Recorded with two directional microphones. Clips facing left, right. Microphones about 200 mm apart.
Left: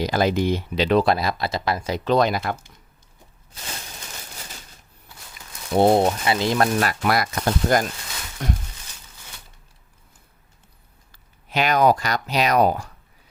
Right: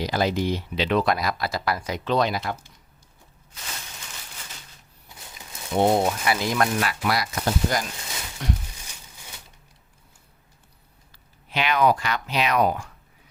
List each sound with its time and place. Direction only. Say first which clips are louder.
0.0 s speech: left 3 dB; 50° left (ahead or behind)
0.9 s speech: left 4 dB; 30° left (ahead or behind)
2.0 s speech: left 4 dB; 45° left (ahead or behind)
5.7 s speech: left 4 dB; 30° left (ahead or behind)
6.7 s speech: left 4 dB; 45° left (ahead or behind)
11.1 s speech: left 4 dB; 45° left (ahead or behind)